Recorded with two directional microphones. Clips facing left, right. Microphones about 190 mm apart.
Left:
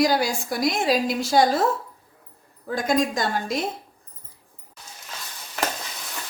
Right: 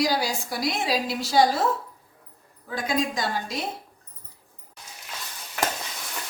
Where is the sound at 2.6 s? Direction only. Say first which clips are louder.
Left 4 dB; 45° left (ahead or behind).